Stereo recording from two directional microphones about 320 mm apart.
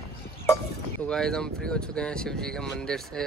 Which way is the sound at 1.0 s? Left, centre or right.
Centre.